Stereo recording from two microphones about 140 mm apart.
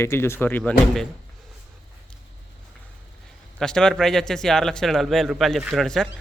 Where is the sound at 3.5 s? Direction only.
5° left (ahead or behind).